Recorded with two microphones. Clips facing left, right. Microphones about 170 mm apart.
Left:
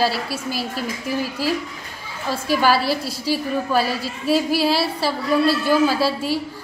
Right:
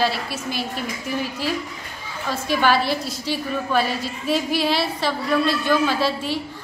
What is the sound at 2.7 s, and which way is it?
Speech, 35° left (ahead or behind).